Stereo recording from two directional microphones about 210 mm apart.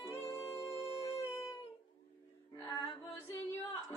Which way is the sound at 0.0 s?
15° left (ahead or behind).